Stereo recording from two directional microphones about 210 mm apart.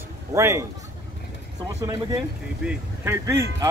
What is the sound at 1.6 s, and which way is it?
Speech, 20° right (ahead or behind).